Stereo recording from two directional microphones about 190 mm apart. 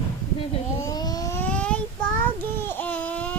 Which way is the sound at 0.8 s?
20° left (ahead or behind).